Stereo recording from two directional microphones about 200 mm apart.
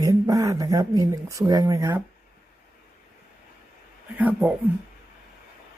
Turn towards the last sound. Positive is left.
turn(degrees=-10)  # may be behind; listen again after turning